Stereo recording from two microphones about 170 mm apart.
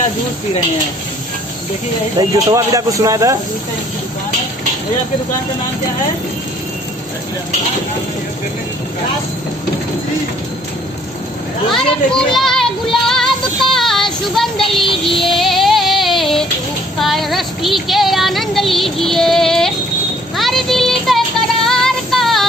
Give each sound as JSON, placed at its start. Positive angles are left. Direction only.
{"t": 2.1, "sound": "speech", "side_deg": -20}
{"t": 12.1, "sound": "child singing", "side_deg": 5}
{"t": 15.2, "sound": "music", "side_deg": 0}
{"t": 17.0, "sound": "child singing", "side_deg": 0}